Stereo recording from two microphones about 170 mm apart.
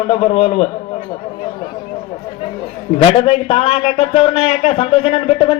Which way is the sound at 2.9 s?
35° left (ahead or behind).